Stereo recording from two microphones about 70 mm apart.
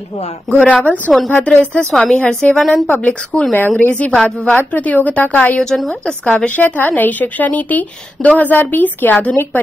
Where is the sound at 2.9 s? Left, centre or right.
Centre.